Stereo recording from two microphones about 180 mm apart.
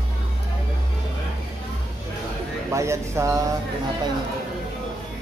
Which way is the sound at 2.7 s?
15° right (ahead or behind).